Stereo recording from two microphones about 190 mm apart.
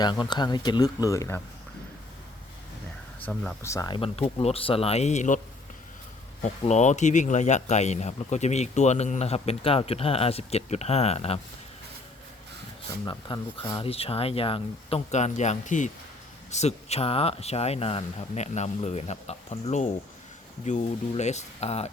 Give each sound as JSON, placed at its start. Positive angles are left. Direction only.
{"t": 0.0, "sound": "speech", "side_deg": 20}
{"t": 3.2, "sound": "speech", "side_deg": 10}
{"t": 6.4, "sound": "speech", "side_deg": 40}
{"t": 13.1, "sound": "speech", "side_deg": 25}